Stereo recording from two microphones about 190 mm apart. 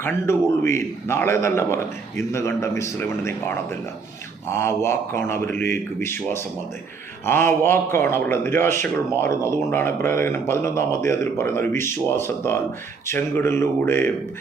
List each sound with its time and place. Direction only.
0.0 s a man's voice: 15° left (ahead or behind)